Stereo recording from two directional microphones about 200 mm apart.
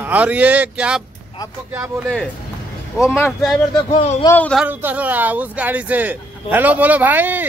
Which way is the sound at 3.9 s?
35° left (ahead or behind).